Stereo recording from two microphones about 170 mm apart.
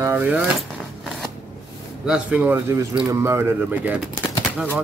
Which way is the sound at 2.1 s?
10° right (ahead or behind).